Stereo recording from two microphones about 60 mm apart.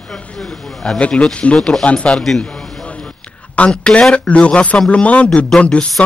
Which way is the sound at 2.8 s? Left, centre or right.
Centre.